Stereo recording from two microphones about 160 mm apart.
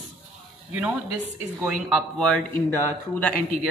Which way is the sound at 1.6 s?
10° right (ahead or behind).